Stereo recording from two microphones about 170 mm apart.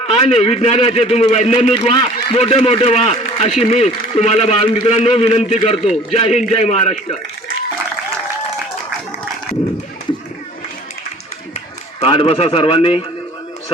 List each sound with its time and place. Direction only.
0.1 s a man's voice: 35° left (ahead or behind)
11.9 s a man's voice: 35° left (ahead or behind)